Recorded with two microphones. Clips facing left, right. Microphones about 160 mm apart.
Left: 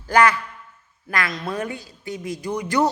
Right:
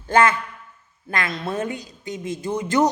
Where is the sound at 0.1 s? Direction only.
25° right (ahead or behind).